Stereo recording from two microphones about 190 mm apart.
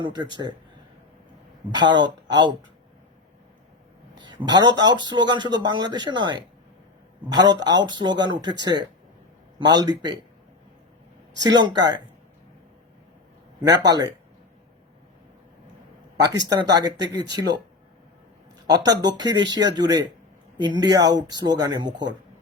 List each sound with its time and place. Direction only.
0.0 s speech: 25° right (ahead or behind)
1.7 s speech: 20° right (ahead or behind)
4.2 s speech: 20° right (ahead or behind)
11.4 s speech: 25° right (ahead or behind)
13.6 s speech: 20° right (ahead or behind)
16.1 s speech: 20° right (ahead or behind)
18.9 s speech: 20° right (ahead or behind)